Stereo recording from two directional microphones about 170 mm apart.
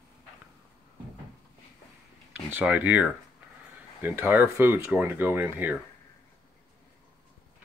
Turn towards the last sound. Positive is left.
turn(degrees=-10)  # may be behind; listen again after turning